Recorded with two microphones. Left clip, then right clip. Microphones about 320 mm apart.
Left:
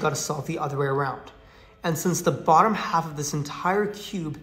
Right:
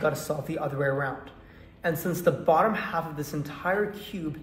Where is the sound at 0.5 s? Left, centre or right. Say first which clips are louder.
Left 2 dB; left.